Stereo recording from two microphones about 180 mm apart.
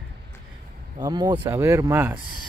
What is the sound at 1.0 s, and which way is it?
Speech, 20° right (ahead or behind).